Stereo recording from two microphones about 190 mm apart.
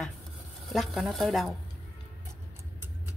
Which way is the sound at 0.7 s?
Centre (ahead or behind).